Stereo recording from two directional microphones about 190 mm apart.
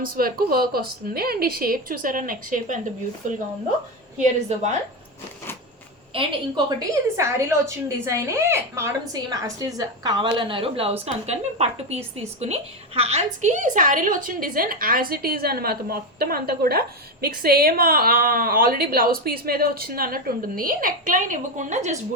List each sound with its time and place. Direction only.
0.0 s a woman's voice: 50° right (ahead or behind)
6.1 s a woman's voice: 30° right (ahead or behind)
6.7 s a woman's voice: 15° right (ahead or behind); by 21.9 s 40° right (ahead or behind)